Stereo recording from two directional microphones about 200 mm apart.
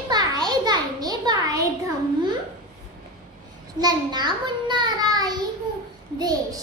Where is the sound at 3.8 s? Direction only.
20° right (ahead or behind).